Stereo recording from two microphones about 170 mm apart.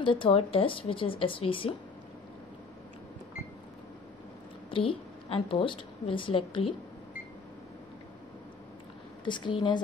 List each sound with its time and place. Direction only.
0.0 s a woman's voice: 30° left (ahead or behind)
4.6 s a woman's voice: 30° left (ahead or behind)
9.2 s a woman's voice: 30° left (ahead or behind)